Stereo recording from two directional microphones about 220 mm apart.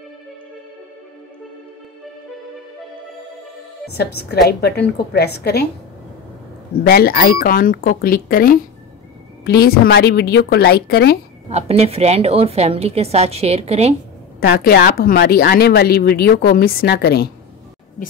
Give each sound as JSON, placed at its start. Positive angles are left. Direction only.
{"t": 4.5, "sound": "a woman's voice", "side_deg": 45}
{"t": 6.9, "sound": "a woman's voice", "side_deg": 45}
{"t": 11.5, "sound": "a woman's voice", "side_deg": -30}
{"t": 14.4, "sound": "a woman's voice", "side_deg": 45}